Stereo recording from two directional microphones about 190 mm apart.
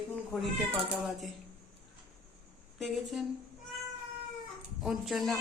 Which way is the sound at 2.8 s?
Centre (ahead or behind).